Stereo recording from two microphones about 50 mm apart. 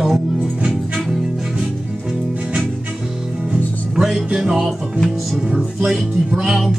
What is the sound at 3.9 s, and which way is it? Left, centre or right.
Music, centre.